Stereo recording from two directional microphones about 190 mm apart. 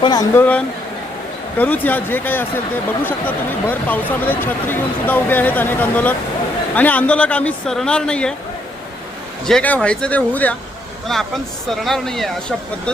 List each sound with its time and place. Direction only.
0.0 s speech: 20° left (ahead or behind)
1.5 s speech: 10° left (ahead or behind)
9.5 s speech: 5° left (ahead or behind)